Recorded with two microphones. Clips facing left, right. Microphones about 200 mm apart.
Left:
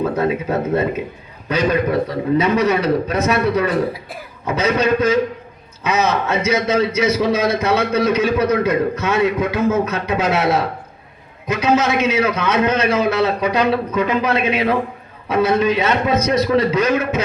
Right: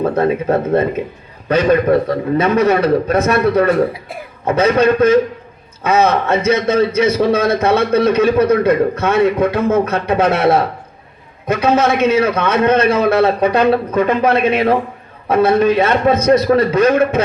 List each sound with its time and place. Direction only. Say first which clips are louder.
0.0 s a man's voice: right 4 dB; 50° right (ahead or behind)